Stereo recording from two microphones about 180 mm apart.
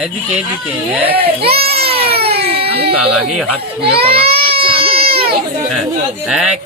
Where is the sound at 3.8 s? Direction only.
30° right (ahead or behind).